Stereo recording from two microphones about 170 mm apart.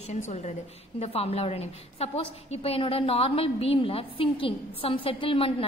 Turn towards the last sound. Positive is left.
turn(degrees=30)  # may be behind; listen again after turning